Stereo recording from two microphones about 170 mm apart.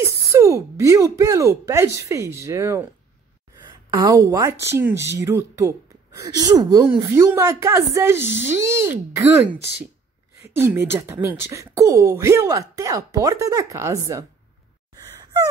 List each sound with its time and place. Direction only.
0.0 s speech: 15° right (ahead or behind)
3.9 s speech: 20° right (ahead or behind)
10.4 s speech: 10° right (ahead or behind)